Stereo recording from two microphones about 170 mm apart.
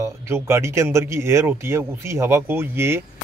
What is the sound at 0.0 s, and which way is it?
Speech, 15° right (ahead or behind).